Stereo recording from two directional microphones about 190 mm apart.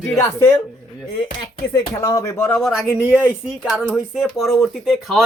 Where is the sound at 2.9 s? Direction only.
10° right (ahead or behind).